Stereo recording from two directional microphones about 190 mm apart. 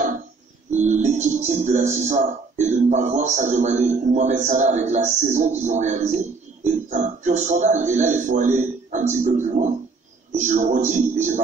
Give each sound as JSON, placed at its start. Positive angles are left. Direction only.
{"t": 0.7, "sound": "speech", "side_deg": -40}